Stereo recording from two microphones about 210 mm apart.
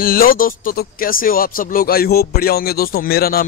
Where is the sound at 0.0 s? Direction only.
45° left (ahead or behind).